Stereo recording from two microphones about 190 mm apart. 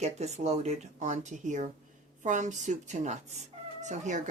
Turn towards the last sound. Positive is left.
turn(degrees=-40)  # may be behind; listen again after turning